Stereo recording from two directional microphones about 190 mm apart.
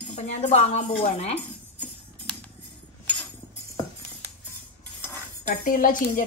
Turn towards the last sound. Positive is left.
turn(degrees=45)  # may be behind; listen again after turning